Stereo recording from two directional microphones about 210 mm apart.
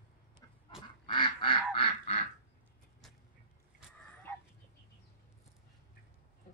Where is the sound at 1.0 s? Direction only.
20° left (ahead or behind).